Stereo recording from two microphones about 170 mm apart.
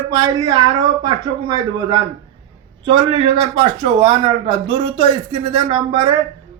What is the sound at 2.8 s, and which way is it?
Speech, 30° right (ahead or behind).